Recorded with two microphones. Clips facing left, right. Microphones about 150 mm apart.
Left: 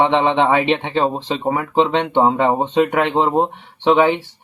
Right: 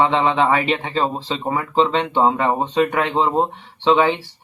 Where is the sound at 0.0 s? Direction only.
20° left (ahead or behind).